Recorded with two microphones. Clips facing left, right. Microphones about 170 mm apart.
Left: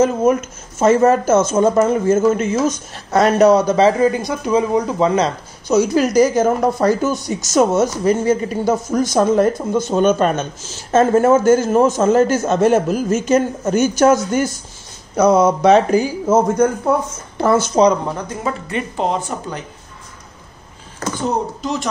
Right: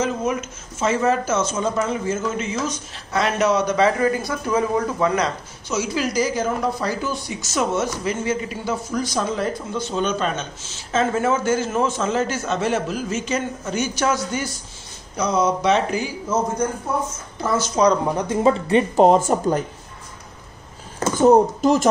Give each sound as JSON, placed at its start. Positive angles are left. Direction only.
{"t": 0.0, "sound": "speech", "side_deg": 45}
{"t": 5.7, "sound": "speech", "side_deg": 40}
{"t": 17.4, "sound": "speech", "side_deg": 60}
{"t": 18.3, "sound": "speech", "side_deg": -25}
{"t": 21.2, "sound": "speech", "side_deg": -45}